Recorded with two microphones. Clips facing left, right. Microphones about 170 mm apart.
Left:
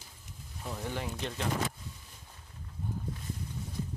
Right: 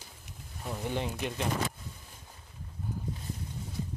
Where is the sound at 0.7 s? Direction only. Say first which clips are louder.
Right 3 dB; 15° right (ahead or behind).